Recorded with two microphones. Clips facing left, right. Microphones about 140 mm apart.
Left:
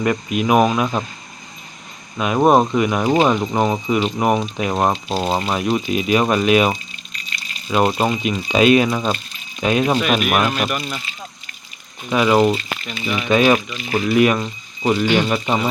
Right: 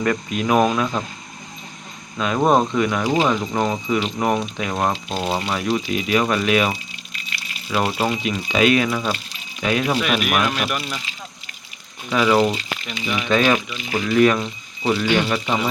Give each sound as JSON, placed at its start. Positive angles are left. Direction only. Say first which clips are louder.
{"t": 0.0, "sound": "speech", "louder": "left 2 dB", "side_deg": 15}
{"t": 2.1, "sound": "speech", "louder": "left 3 dB", "side_deg": 15}
{"t": 6.9, "sound": "water", "louder": "even", "side_deg": -5}
{"t": 7.7, "sound": "speech", "louder": "left 4 dB", "side_deg": 20}
{"t": 10.2, "sound": "speech", "louder": "left 3 dB", "side_deg": 0}
{"t": 10.4, "sound": "speech", "louder": "left 2 dB", "side_deg": 10}
{"t": 12.0, "sound": "speech", "louder": "left 2 dB", "side_deg": 15}
{"t": 12.5, "sound": "speech", "louder": "left 4 dB", "side_deg": -15}
{"t": 13.2, "sound": "speech", "louder": "left 3 dB", "side_deg": 15}
{"t": 13.7, "sound": "speech", "louder": "left 2 dB", "side_deg": -15}
{"t": 14.0, "sound": "speech", "louder": "even", "side_deg": 15}